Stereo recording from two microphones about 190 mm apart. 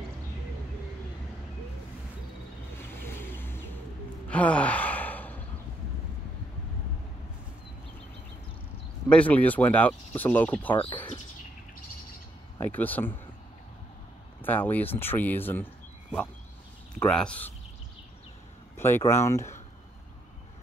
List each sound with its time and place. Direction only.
2.9 s a sound: 10° left (ahead or behind)
4.3 s sigh: 5° left (ahead or behind)
9.1 s speech: 5° left (ahead or behind)
10.7 s speech: 25° left (ahead or behind)
12.5 s speech: 10° left (ahead or behind)
14.4 s speech: 10° left (ahead or behind)
17.0 s speech: 5° left (ahead or behind)
18.8 s speech: 10° left (ahead or behind)